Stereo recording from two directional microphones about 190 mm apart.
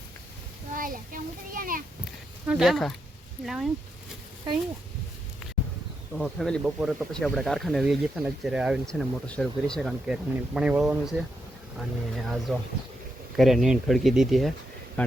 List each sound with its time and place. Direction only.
0.7 s a child's voice: 45° right (ahead or behind)
2.5 s speech: centre (ahead or behind)
6.1 s speech: centre (ahead or behind)